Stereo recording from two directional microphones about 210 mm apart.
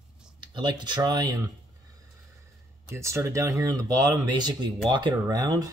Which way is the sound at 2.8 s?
15° right (ahead or behind).